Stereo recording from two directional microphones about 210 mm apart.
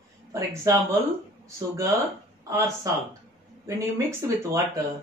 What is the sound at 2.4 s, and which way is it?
Speech, 15° right (ahead or behind).